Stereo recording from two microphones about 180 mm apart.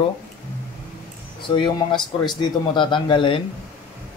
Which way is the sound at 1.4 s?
25° left (ahead or behind).